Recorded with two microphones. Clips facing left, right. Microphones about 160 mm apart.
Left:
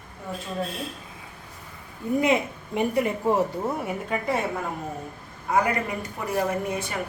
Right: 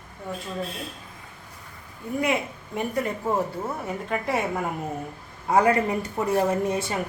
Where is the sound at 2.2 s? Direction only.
20° left (ahead or behind).